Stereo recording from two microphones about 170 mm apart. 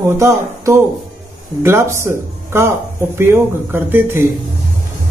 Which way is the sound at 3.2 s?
15° right (ahead or behind).